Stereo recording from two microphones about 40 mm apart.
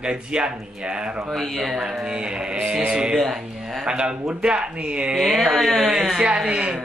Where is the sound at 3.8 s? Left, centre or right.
Right.